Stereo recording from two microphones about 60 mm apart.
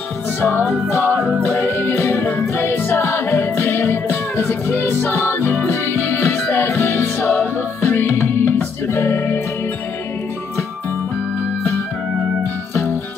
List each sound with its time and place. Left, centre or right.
0.4 s music: left
8.0 s music: left